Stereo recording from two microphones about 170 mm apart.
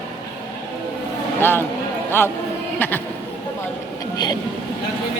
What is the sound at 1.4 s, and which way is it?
Speech, 10° left (ahead or behind).